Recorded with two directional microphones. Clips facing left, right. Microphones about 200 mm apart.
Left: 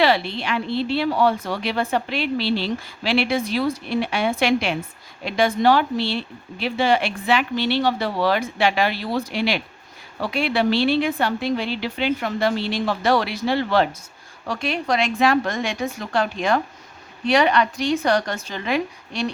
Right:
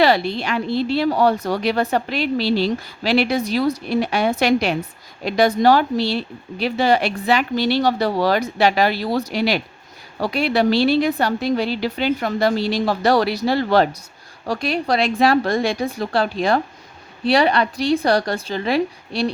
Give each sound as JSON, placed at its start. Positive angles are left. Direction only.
{"t": 0.0, "sound": "speech", "side_deg": -40}